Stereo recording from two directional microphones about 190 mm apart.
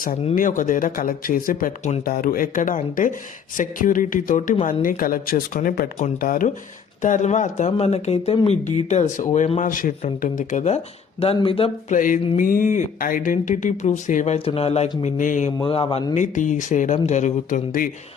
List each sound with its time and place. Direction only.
0.0 s speech: 45° left (ahead or behind); by 11.9 s 30° left (ahead or behind)
11.9 s speech: 45° left (ahead or behind)
15.5 s speech: 25° left (ahead or behind); by 17.8 s 45° left (ahead or behind)